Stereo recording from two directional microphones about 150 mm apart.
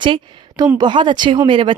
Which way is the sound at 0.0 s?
30° right (ahead or behind).